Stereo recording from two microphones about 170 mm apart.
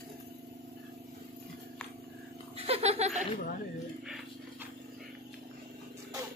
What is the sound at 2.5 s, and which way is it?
Laughter, 35° right (ahead or behind).